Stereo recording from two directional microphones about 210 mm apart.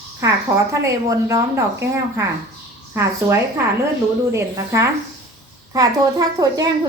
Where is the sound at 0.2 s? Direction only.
15° right (ahead or behind).